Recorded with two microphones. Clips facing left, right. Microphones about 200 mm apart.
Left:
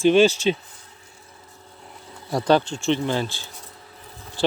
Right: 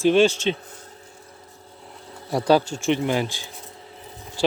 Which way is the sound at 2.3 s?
10° right (ahead or behind).